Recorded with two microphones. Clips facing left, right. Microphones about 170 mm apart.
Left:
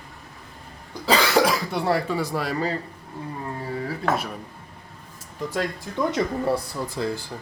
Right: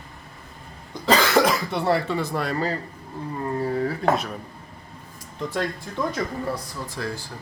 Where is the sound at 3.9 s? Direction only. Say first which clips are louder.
Right 3 dB; 5° left (ahead or behind).